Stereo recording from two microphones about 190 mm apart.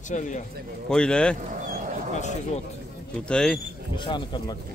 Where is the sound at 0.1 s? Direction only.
40° left (ahead or behind).